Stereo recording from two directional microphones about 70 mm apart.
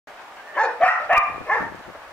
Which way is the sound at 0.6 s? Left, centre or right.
Centre.